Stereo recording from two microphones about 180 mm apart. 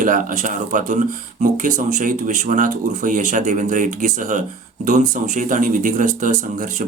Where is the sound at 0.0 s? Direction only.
50° right (ahead or behind).